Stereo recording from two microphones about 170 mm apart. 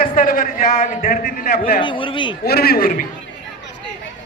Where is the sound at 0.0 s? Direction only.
55° left (ahead or behind).